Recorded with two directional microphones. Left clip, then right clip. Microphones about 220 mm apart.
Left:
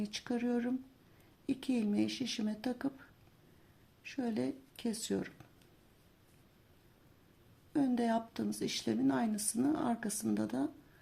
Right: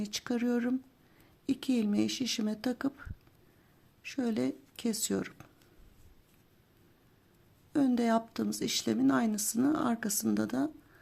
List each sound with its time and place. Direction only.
0.0 s speech: 25° right (ahead or behind)
7.7 s speech: 25° right (ahead or behind)